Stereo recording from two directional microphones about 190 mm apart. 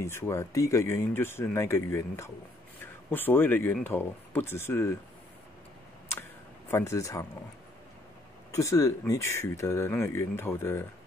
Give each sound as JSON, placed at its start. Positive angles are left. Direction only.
{"t": 0.0, "sound": "speech", "side_deg": 15}
{"t": 6.7, "sound": "speech", "side_deg": 15}
{"t": 8.5, "sound": "speech", "side_deg": 15}